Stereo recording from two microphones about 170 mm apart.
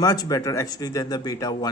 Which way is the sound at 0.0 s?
20° left (ahead or behind).